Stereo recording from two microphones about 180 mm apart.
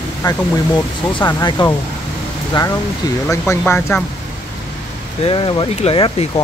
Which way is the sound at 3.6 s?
10° left (ahead or behind).